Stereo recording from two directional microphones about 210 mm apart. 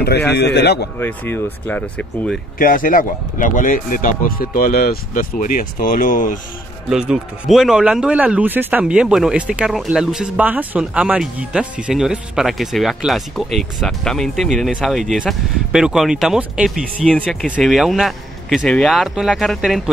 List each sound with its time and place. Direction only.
0.3 s a man's voice: 55° left (ahead or behind)
0.9 s speech: 10° left (ahead or behind)
2.6 s speech: 40° left (ahead or behind)
6.9 s speech: centre (ahead or behind)